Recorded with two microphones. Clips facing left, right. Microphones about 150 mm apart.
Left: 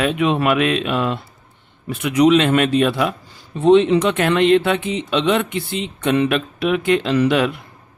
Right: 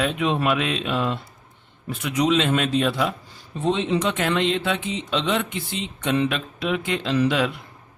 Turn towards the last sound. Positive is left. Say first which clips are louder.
# left 5 dB
turn(degrees=65)  # may be behind; listen again after turning